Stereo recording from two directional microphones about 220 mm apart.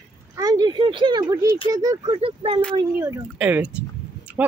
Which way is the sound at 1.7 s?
15° right (ahead or behind).